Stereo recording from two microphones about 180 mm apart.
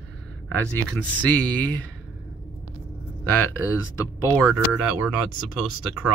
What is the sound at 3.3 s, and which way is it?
Speech, 10° left (ahead or behind).